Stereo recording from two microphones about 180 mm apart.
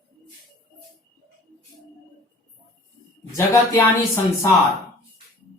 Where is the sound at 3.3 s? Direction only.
15° left (ahead or behind).